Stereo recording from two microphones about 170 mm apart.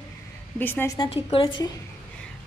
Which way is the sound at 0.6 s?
10° left (ahead or behind).